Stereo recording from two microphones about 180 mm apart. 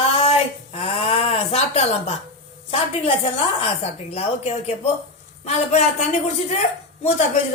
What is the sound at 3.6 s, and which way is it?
A woman's voice, 35° left (ahead or behind).